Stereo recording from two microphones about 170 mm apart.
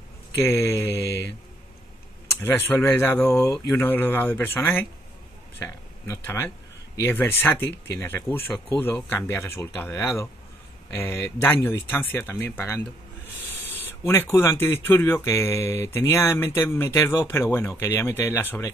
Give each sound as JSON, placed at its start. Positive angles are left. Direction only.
{"t": 0.4, "sound": "speech", "side_deg": 15}
{"t": 1.0, "sound": "speech", "side_deg": 85}
{"t": 2.4, "sound": "speech", "side_deg": 15}
{"t": 14.0, "sound": "speech", "side_deg": 10}